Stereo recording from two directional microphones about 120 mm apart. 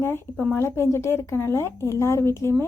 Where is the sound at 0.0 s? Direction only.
20° left (ahead or behind).